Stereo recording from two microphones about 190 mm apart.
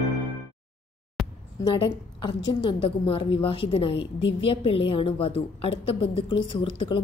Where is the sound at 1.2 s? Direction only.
Centre (ahead or behind).